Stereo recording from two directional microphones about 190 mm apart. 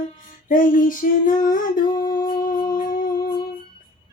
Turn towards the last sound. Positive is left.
turn(degrees=50)  # may be behind; listen again after turning